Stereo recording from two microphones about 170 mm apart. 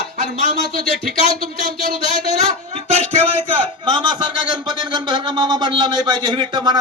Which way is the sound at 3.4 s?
30° right (ahead or behind).